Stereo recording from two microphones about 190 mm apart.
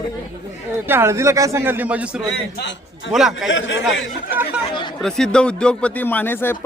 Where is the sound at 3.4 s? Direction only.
75° left (ahead or behind).